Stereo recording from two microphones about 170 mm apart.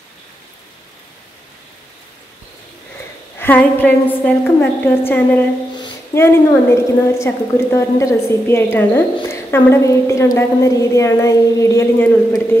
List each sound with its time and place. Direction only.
3.3 s a woman's voice: 10° left (ahead or behind)